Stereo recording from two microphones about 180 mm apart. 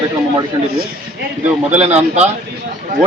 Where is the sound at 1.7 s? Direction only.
40° right (ahead or behind).